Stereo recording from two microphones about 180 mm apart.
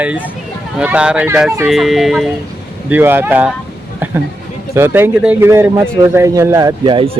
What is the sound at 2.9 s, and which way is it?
Speech, 10° right (ahead or behind).